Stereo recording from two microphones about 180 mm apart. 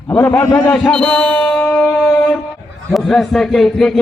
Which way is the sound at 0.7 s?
5° left (ahead or behind).